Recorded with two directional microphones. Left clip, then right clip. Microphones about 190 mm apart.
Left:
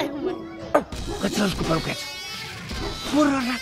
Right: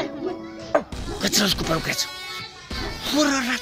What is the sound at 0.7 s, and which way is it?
Music, 55° left (ahead or behind).